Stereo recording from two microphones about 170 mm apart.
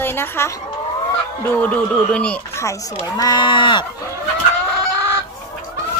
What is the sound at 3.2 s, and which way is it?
Speech, 25° left (ahead or behind).